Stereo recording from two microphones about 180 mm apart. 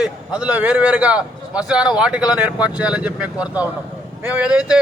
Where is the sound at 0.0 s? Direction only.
5° right (ahead or behind).